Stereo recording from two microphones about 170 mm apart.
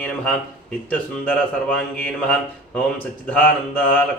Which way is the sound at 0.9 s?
10° left (ahead or behind).